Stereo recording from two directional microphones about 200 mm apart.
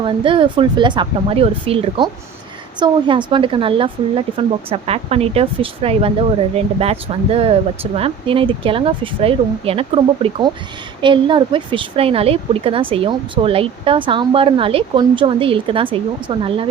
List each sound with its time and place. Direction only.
0.0 s a woman's voice: 25° right (ahead or behind)